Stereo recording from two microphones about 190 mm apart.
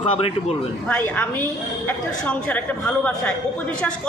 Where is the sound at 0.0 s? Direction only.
30° left (ahead or behind).